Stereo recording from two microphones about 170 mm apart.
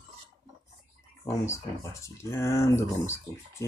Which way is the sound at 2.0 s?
15° left (ahead or behind).